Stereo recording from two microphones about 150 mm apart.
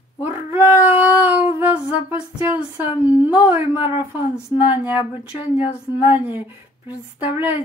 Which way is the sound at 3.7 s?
35° left (ahead or behind).